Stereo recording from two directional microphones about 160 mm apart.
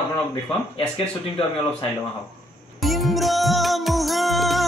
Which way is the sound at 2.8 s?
Centre (ahead or behind).